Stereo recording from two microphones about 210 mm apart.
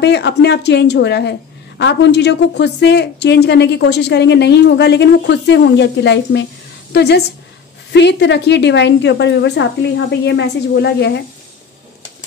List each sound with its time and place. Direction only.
0.0 s a woman's voice: 55° left (ahead or behind)